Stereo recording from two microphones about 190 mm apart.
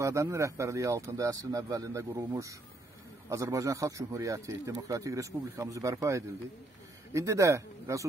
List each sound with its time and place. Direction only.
0.0 s a man's voice: 15° right (ahead or behind)